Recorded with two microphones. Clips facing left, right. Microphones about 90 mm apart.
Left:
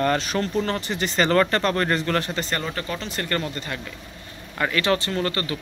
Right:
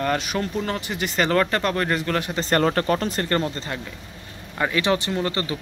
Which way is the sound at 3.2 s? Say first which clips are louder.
Right 3 dB; 25° right (ahead or behind).